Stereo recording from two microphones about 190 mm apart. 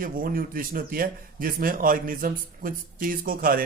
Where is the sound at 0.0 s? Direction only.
50° right (ahead or behind).